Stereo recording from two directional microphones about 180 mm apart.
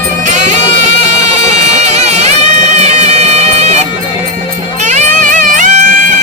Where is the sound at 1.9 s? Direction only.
35° right (ahead or behind).